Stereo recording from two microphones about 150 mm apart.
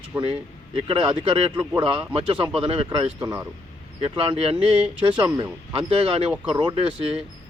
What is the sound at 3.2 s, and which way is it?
Speech, 15° right (ahead or behind).